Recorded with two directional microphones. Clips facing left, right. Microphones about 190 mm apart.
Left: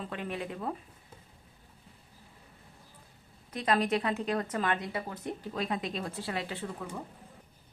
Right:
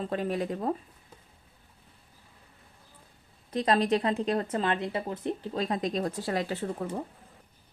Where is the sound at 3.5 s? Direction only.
35° right (ahead or behind).